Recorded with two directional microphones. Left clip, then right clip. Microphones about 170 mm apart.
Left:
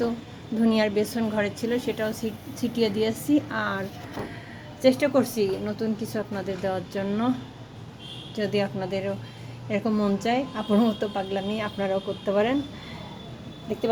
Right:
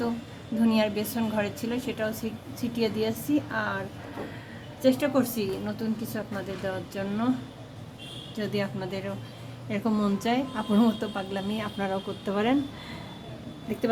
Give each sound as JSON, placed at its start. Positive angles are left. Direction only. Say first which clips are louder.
{"t": 0.6, "sound": "a woman's voice", "louder": "left 3 dB", "side_deg": 20}
{"t": 8.4, "sound": "a woman's voice", "louder": "left 5 dB", "side_deg": 15}